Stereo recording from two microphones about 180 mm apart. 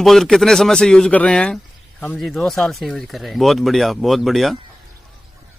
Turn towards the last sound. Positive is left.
turn(degrees=0)  # may be behind; listen again after turning